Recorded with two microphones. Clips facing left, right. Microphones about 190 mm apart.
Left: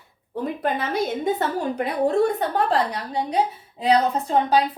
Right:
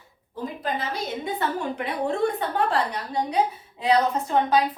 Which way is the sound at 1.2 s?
40° left (ahead or behind).